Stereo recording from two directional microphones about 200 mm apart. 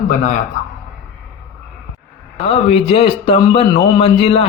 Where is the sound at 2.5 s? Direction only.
30° left (ahead or behind).